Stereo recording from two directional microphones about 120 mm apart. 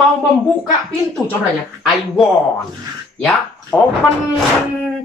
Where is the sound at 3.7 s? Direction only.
10° left (ahead or behind).